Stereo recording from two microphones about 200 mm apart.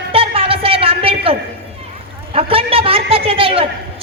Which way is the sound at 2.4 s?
30° right (ahead or behind).